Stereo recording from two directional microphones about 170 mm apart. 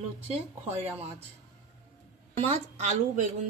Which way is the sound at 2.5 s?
45° right (ahead or behind).